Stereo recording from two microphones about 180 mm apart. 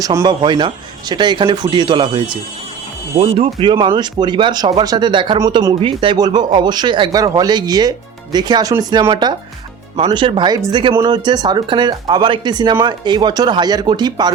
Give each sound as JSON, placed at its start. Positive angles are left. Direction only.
{"t": 0.0, "sound": "speech", "side_deg": -20}